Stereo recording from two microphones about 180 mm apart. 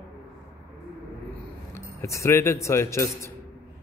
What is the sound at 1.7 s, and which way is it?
A man's voice, 15° left (ahead or behind).